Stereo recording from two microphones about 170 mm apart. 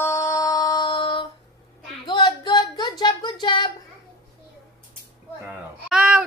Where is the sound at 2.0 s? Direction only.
25° left (ahead or behind).